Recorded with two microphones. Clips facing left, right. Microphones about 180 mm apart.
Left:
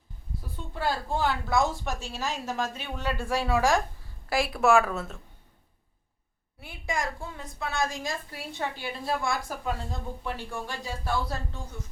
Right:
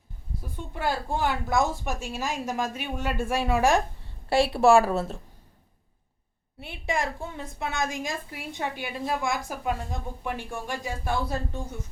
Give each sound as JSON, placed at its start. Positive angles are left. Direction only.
{"t": 0.7, "sound": "a woman's voice", "side_deg": -15}
{"t": 4.3, "sound": "speech", "side_deg": -30}
{"t": 6.6, "sound": "a woman's voice", "side_deg": -25}